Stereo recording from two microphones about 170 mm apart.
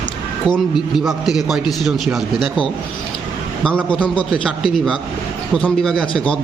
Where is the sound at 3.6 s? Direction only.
5° left (ahead or behind).